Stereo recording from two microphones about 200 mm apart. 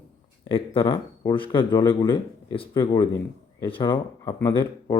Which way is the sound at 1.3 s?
25° left (ahead or behind).